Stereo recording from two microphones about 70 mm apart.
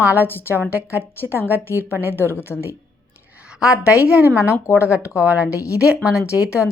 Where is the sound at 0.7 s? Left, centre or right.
Right.